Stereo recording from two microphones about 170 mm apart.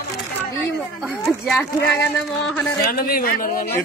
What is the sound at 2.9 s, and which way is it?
Speech, 60° left (ahead or behind).